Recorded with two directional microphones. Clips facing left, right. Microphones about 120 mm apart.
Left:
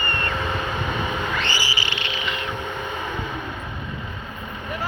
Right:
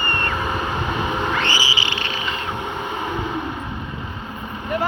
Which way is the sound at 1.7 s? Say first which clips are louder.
Right 3 dB; 25° right (ahead or behind).